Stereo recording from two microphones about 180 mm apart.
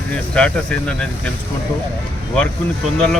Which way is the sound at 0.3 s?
5° left (ahead or behind).